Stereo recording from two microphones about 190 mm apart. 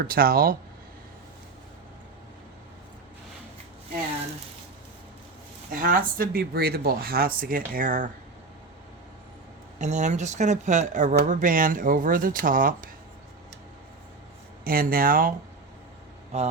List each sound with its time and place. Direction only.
0.0 s speech: 50° right (ahead or behind)
5.7 s speech: 45° right (ahead or behind)
9.7 s speech: 40° right (ahead or behind)
14.6 s speech: 50° right (ahead or behind)